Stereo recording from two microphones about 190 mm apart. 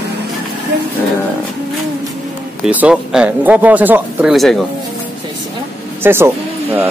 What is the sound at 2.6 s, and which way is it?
Speech, 5° right (ahead or behind).